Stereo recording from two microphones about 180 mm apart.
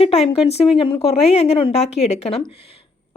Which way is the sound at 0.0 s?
35° left (ahead or behind).